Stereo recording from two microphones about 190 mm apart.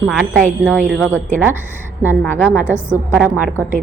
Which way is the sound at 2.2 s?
10° left (ahead or behind).